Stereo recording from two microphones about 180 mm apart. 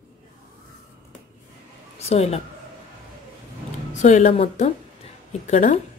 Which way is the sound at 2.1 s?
35° left (ahead or behind).